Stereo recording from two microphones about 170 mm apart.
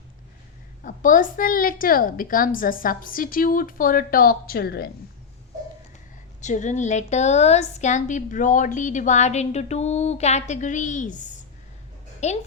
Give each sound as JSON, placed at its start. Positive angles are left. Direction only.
{"t": 0.9, "sound": "a woman's voice", "side_deg": 50}
{"t": 6.4, "sound": "a woman's voice", "side_deg": 45}